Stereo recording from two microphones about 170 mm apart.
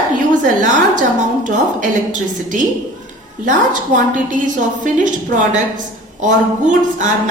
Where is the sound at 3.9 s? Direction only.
45° right (ahead or behind).